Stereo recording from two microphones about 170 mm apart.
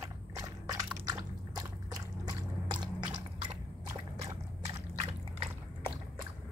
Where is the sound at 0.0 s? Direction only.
20° right (ahead or behind).